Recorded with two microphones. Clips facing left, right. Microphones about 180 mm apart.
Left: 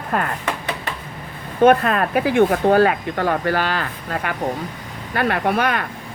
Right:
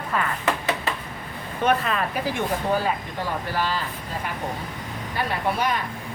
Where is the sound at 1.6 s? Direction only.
55° left (ahead or behind).